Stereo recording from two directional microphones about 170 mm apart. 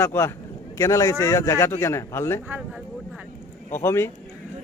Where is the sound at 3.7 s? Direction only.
15° left (ahead or behind).